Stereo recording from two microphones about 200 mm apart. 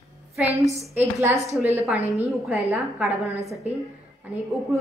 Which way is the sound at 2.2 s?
Centre (ahead or behind).